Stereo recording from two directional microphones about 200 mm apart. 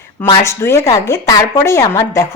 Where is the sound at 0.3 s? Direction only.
15° left (ahead or behind).